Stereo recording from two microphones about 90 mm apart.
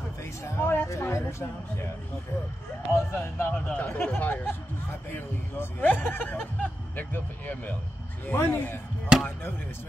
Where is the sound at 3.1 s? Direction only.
20° left (ahead or behind).